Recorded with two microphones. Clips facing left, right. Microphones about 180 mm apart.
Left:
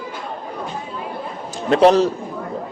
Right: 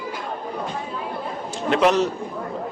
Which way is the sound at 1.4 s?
35° left (ahead or behind).